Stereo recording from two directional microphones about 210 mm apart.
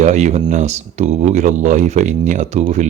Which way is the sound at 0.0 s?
35° right (ahead or behind).